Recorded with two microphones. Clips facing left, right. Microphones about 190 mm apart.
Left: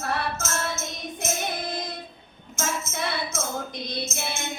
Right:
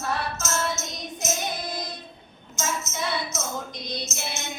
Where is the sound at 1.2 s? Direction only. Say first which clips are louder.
Even; 55° left (ahead or behind).